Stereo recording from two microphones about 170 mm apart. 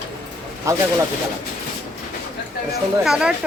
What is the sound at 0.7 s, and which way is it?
Speech, 15° right (ahead or behind).